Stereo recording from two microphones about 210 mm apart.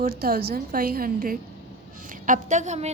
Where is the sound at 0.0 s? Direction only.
45° right (ahead or behind).